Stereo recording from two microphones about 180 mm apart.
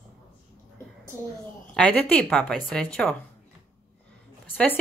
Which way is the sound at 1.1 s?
15° left (ahead or behind).